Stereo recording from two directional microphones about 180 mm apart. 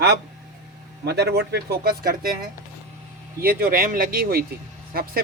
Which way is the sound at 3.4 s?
55° right (ahead or behind).